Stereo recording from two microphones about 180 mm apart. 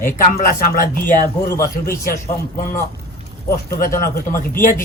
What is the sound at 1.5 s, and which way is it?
Speech, 15° left (ahead or behind).